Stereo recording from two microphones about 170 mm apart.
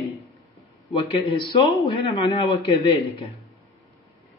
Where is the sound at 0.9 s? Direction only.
30° left (ahead or behind).